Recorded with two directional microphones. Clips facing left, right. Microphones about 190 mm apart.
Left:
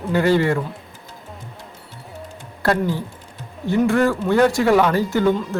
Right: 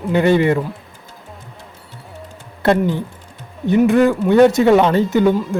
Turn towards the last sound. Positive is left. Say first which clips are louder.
# right 4 dB
turn(degrees=-20)  # may be behind; listen again after turning